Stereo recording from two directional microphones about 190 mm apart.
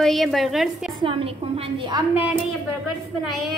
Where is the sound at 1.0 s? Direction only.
30° right (ahead or behind).